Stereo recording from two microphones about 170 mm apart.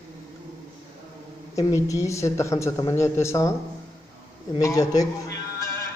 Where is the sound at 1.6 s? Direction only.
20° left (ahead or behind).